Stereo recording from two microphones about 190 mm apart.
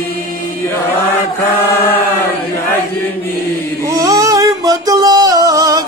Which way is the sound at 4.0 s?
20° right (ahead or behind).